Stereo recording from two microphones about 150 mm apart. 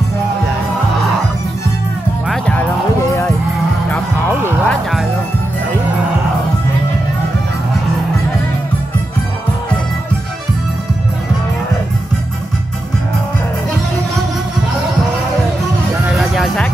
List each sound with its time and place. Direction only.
2.2 s music: 5° left (ahead or behind)
3.1 s music: 20° left (ahead or behind)
16.1 s music: centre (ahead or behind)